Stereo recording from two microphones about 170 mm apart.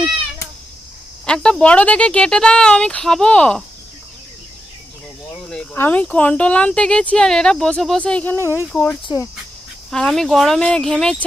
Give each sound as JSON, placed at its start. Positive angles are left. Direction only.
{"t": 1.2, "sound": "speech", "side_deg": 5}
{"t": 5.5, "sound": "speech", "side_deg": 10}
{"t": 9.0, "sound": "speech", "side_deg": 20}
{"t": 9.9, "sound": "speech", "side_deg": 5}